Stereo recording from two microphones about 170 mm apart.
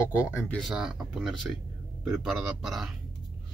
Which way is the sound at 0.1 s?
15° left (ahead or behind).